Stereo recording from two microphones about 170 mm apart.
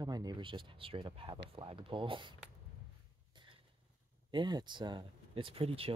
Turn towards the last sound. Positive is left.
turn(degrees=-35)  # may be behind; listen again after turning